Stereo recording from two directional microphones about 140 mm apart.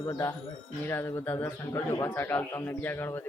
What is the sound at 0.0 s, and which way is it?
A man's voice, 25° left (ahead or behind).